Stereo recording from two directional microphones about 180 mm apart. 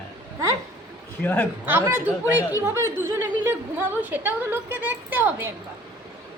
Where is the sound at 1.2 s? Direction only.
10° left (ahead or behind).